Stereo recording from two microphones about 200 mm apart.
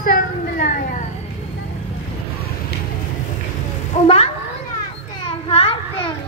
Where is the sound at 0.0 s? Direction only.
45° left (ahead or behind).